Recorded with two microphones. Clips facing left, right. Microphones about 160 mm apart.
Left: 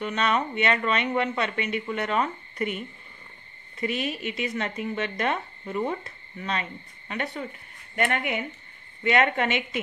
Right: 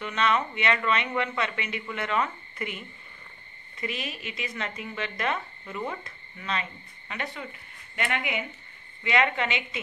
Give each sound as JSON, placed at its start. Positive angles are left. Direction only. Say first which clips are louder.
{"t": 0.0, "sound": "speech", "louder": "left 1 dB", "side_deg": 40}
{"t": 4.3, "sound": "a woman's voice", "louder": "left 5 dB", "side_deg": 40}